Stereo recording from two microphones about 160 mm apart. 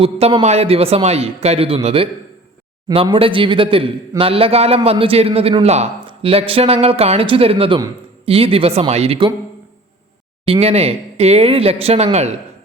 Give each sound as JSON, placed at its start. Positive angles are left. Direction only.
{"t": 0.0, "sound": "a man's voice", "side_deg": -35}
{"t": 10.4, "sound": "a man's voice", "side_deg": -35}